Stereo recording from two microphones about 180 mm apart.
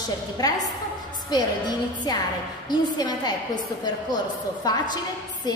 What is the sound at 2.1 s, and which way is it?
A woman's voice, 25° left (ahead or behind).